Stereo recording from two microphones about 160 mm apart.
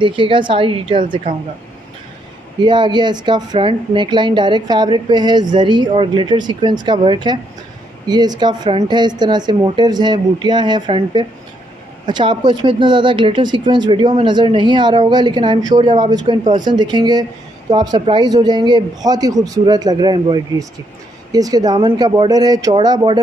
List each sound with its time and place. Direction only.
0.0 s a woman's voice: 30° right (ahead or behind)
2.6 s speech: 30° right (ahead or behind)